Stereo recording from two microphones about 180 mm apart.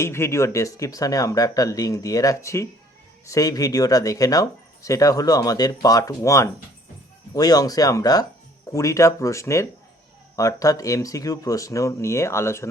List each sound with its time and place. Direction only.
0.0 s speech: 15° left (ahead or behind)